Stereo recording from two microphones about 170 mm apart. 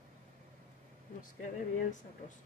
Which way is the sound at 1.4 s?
45° left (ahead or behind).